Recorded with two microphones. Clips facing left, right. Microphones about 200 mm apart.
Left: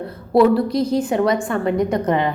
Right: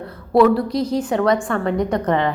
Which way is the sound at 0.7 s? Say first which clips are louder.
Left 2 dB; 55° left (ahead or behind).